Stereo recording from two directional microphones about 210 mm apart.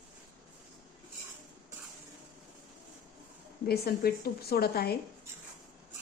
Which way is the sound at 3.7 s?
45° left (ahead or behind).